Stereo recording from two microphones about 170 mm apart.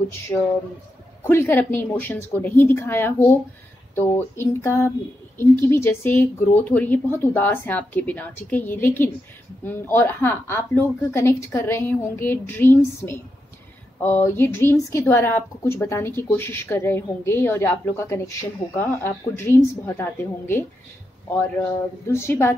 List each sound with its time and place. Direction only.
1.2 s a woman's voice: 15° left (ahead or behind)